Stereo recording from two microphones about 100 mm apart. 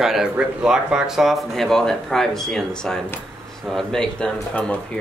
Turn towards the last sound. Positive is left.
turn(degrees=10)  # may be behind; listen again after turning